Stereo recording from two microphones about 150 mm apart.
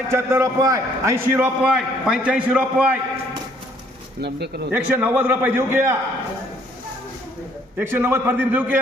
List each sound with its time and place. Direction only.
0.1 s a man's voice: 15° right (ahead or behind)
4.2 s speech: 90° right
4.7 s a man's voice: 10° right (ahead or behind)
7.8 s a man's voice: 15° right (ahead or behind)